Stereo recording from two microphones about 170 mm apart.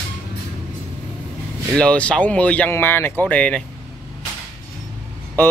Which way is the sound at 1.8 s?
5° left (ahead or behind).